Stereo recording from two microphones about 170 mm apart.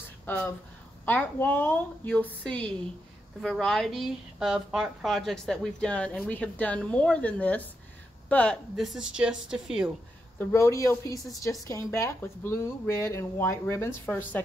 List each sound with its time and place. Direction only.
1.0 s a woman's voice: 10° left (ahead or behind)
10.5 s speech: 15° left (ahead or behind)